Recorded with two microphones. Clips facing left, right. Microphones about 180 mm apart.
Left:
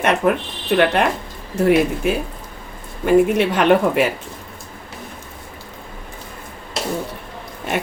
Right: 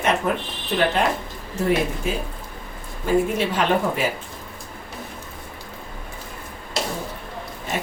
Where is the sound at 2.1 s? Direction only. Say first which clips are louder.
Left 6 dB; 70° left (ahead or behind).